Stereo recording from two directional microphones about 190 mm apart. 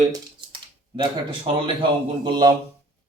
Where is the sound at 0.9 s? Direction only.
25° right (ahead or behind).